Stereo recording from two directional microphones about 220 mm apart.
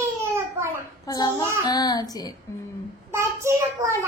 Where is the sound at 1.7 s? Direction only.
15° left (ahead or behind).